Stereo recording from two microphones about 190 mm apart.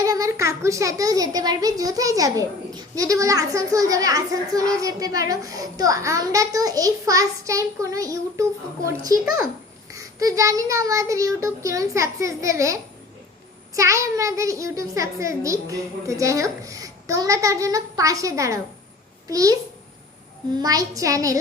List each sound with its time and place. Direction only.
0.0 s a child's voice: 15° right (ahead or behind)
20.6 s a child's voice: 20° right (ahead or behind)